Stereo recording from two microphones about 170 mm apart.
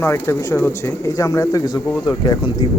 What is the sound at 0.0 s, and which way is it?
Speech, 15° left (ahead or behind).